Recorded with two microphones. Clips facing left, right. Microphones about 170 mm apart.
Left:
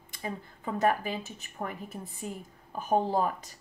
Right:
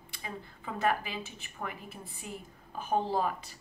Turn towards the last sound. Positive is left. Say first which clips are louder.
# left 3 dB
turn(degrees=45)  # may be behind; listen again after turning